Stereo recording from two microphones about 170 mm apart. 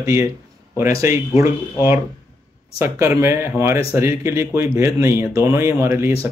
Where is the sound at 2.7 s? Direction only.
15° right (ahead or behind).